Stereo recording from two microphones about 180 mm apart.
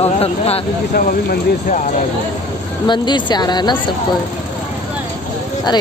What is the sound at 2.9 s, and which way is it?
Speech, 25° left (ahead or behind).